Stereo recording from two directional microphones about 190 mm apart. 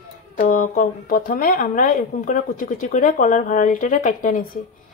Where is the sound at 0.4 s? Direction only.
40° left (ahead or behind).